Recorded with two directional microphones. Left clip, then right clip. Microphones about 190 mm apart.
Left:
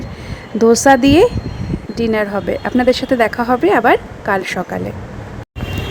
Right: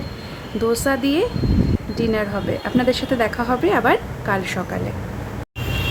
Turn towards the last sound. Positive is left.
turn(degrees=30)  # may be behind; listen again after turning